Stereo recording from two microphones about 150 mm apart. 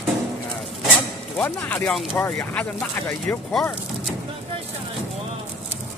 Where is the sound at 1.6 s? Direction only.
15° left (ahead or behind).